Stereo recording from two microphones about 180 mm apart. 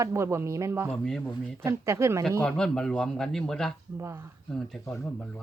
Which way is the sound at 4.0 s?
15° right (ahead or behind).